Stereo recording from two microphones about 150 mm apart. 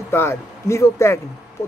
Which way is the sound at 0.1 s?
15° left (ahead or behind).